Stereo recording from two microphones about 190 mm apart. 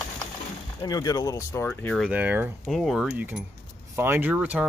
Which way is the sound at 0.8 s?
20° left (ahead or behind).